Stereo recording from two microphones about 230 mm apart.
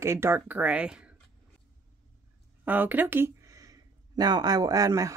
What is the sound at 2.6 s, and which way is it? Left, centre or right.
Speech, centre.